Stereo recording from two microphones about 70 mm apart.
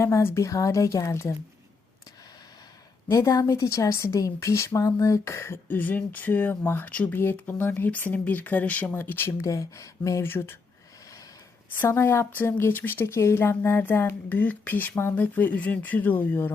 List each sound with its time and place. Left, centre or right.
0.0 s a woman's voice: left
3.1 s a woman's voice: left
5.7 s speech: left
9.4 s a woman's voice: left
10.2 s speech: left
11.9 s speech: left
12.3 s speech: left
14.3 s speech: left